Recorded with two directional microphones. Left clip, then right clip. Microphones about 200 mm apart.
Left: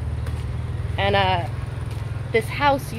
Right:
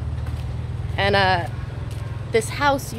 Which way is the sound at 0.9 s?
20° right (ahead or behind).